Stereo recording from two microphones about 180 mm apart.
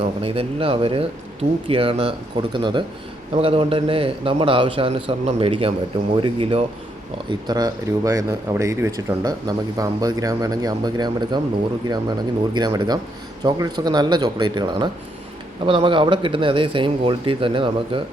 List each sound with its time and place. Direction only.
0.0 s speech: 30° right (ahead or behind)
12.5 s speech: 25° right (ahead or behind)